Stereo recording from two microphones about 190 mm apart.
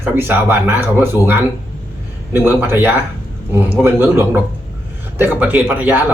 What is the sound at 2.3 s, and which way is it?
Speech, 10° right (ahead or behind).